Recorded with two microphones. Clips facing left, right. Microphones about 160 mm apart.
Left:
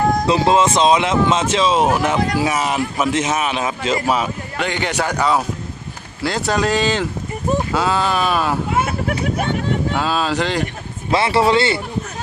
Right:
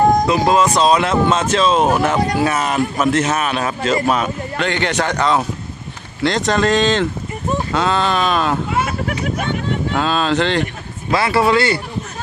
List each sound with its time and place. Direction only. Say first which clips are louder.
0.3 s a man's voice: even; 25° left (ahead or behind); by 8.5 s 10° left (ahead or behind)
9.9 s a man's voice: right 2 dB; 10° left (ahead or behind)
11.1 s speech: even; 25° left (ahead or behind)